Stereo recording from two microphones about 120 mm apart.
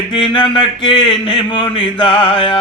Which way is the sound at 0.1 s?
45° left (ahead or behind).